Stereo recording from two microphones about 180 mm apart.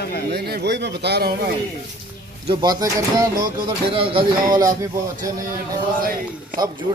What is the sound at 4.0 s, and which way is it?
Speech, 30° right (ahead or behind).